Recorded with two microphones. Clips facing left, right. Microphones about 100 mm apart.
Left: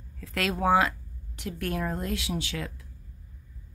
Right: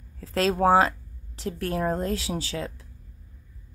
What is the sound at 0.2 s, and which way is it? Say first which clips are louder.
Speech: right 6 dB; 30° right (ahead or behind).